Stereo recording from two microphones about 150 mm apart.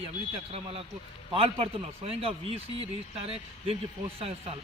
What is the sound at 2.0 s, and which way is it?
A man's voice, 40° right (ahead or behind).